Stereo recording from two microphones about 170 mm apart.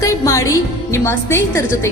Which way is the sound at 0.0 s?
20° left (ahead or behind).